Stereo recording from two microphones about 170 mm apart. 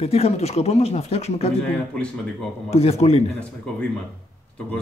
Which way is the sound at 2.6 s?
40° left (ahead or behind).